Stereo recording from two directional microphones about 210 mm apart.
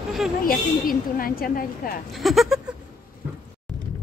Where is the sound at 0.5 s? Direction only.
45° left (ahead or behind).